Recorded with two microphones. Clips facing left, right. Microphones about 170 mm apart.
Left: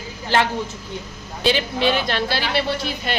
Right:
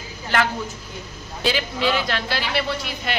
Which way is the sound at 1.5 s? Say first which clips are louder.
Left 3 dB; 25° left (ahead or behind).